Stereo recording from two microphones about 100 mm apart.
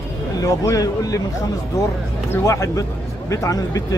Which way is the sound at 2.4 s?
35° left (ahead or behind).